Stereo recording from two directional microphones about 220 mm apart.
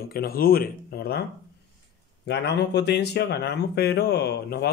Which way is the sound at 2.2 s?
50° left (ahead or behind).